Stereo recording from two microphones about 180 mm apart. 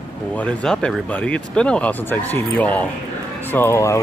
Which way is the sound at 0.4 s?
5° left (ahead or behind).